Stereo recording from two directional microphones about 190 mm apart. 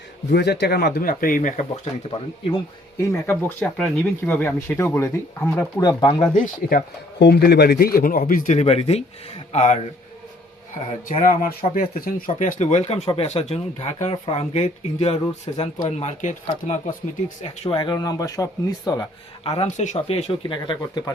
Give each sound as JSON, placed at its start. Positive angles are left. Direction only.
{"t": 0.3, "sound": "speech", "side_deg": 60}
{"t": 3.6, "sound": "speech", "side_deg": 5}
{"t": 5.8, "sound": "speech", "side_deg": 20}
{"t": 6.3, "sound": "speech", "side_deg": 45}
{"t": 7.2, "sound": "speech", "side_deg": 55}
{"t": 11.2, "sound": "speech", "side_deg": 45}
{"t": 17.7, "sound": "speech", "side_deg": 20}
{"t": 19.5, "sound": "speech", "side_deg": 35}